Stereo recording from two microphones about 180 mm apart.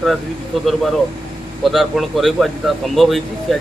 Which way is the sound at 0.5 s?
Centre (ahead or behind).